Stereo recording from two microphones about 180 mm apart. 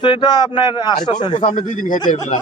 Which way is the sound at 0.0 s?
25° left (ahead or behind).